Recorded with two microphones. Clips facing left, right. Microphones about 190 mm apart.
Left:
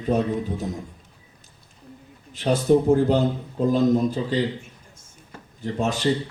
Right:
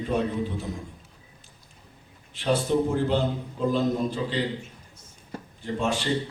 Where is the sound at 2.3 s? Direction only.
45° left (ahead or behind).